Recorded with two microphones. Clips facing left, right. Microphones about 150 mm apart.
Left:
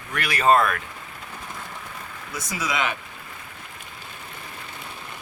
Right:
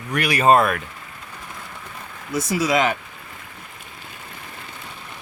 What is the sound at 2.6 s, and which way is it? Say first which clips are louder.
Speech: right 7 dB; 40° right (ahead or behind).